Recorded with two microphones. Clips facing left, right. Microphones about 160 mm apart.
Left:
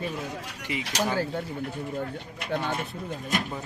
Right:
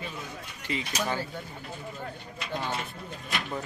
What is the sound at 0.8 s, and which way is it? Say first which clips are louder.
Speech: left 7 dB; 90° left.